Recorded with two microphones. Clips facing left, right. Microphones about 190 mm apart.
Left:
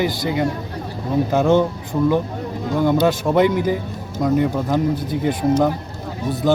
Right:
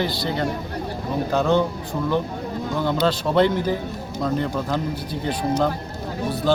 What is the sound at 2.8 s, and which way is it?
Speech, 15° left (ahead or behind).